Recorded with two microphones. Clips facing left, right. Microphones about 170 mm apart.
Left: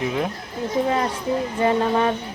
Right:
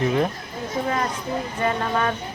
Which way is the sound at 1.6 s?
25° left (ahead or behind).